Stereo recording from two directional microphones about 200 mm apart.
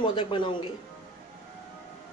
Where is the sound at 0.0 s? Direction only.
25° left (ahead or behind).